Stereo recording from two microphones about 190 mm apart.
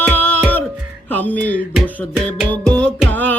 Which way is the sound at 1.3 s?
70° right (ahead or behind).